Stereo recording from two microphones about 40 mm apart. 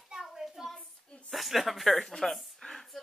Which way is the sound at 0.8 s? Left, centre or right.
Left.